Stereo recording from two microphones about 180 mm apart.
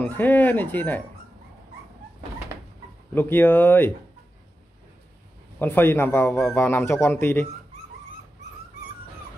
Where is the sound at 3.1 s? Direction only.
10° left (ahead or behind).